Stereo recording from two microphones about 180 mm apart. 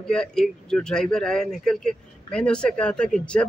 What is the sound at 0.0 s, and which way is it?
Speech, 5° left (ahead or behind).